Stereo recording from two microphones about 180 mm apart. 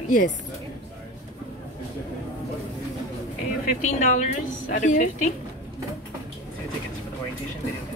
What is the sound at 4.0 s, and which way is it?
Speech, 40° left (ahead or behind).